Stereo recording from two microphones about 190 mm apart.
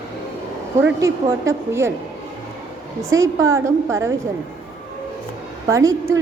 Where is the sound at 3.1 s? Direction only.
15° right (ahead or behind).